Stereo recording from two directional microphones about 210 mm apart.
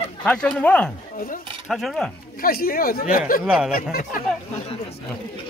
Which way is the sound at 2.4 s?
45° left (ahead or behind).